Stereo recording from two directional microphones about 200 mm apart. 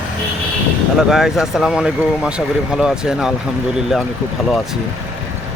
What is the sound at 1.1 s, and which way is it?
Speech, centre (ahead or behind).